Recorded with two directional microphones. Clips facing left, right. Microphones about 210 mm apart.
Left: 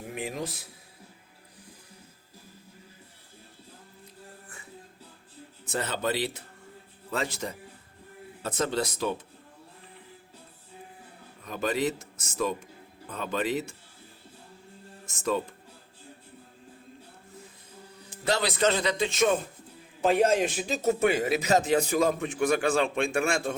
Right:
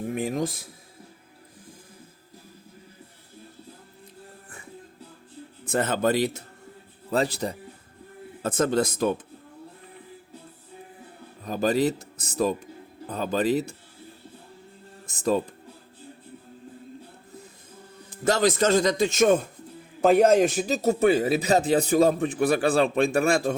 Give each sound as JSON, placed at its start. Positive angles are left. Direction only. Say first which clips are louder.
{"t": 0.1, "sound": "a man's voice", "louder": "right 6 dB", "side_deg": -45}
{"t": 5.6, "sound": "a man's voice", "louder": "right 6 dB", "side_deg": -50}
{"t": 8.4, "sound": "a man's voice", "louder": "right 6 dB", "side_deg": -50}
{"t": 11.4, "sound": "a man's voice", "louder": "right 5 dB", "side_deg": -35}
{"t": 15.0, "sound": "speech", "louder": "right 5 dB", "side_deg": -35}
{"t": 18.3, "sound": "a man's voice", "louder": "right 5 dB", "side_deg": -45}